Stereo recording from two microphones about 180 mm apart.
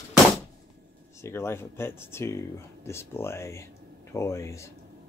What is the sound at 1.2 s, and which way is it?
Speech, 15° left (ahead or behind).